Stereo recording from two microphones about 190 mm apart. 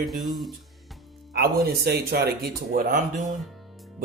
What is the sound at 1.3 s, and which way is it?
Speech, 55° right (ahead or behind).